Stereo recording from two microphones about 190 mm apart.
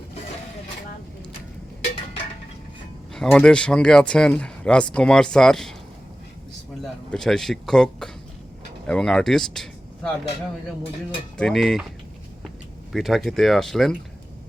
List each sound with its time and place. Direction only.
3.2 s speech: 5° left (ahead or behind)
6.8 s speech: centre (ahead or behind)
11.3 s speech: centre (ahead or behind)
12.9 s speech: centre (ahead or behind)